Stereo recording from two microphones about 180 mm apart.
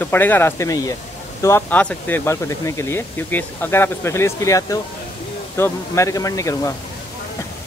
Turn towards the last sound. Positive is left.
turn(degrees=15)  # may be behind; listen again after turning